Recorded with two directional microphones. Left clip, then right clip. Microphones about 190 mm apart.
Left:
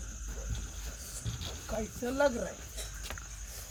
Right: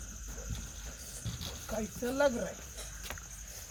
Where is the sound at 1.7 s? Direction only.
10° right (ahead or behind).